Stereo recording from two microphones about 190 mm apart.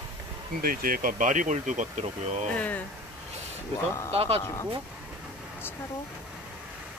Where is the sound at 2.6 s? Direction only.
5° left (ahead or behind).